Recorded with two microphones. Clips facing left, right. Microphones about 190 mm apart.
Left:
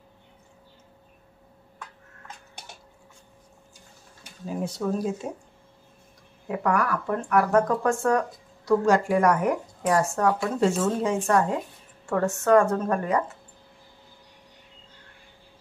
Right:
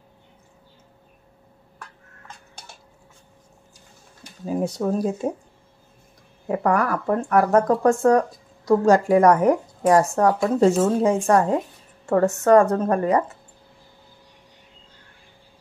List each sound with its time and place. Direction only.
4.6 s speech: 40° right (ahead or behind)
6.4 s speech: 40° right (ahead or behind)